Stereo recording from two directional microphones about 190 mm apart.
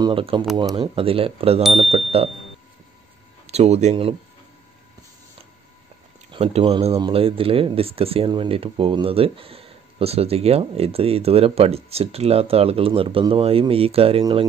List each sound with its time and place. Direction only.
0.0 s speech: 30° right (ahead or behind)
1.9 s a sound: 30° right (ahead or behind)
3.4 s speech: 35° right (ahead or behind)
6.3 s speech: 30° right (ahead or behind)